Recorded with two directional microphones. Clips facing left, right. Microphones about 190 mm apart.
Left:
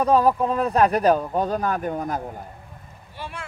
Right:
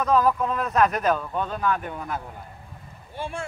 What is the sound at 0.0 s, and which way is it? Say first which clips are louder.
Speech: left 3 dB; 30° left (ahead or behind).